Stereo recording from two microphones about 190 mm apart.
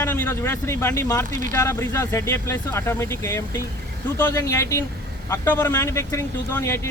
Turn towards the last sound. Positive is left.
turn(degrees=15)  # may be behind; listen again after turning